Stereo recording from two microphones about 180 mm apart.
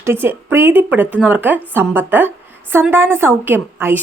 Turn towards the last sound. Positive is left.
turn(degrees=-10)  # may be behind; listen again after turning